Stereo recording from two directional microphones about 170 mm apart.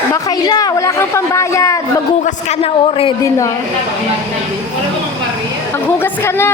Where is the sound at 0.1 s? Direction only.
25° left (ahead or behind).